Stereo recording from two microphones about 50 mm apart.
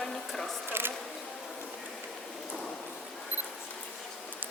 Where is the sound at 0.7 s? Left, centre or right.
Right.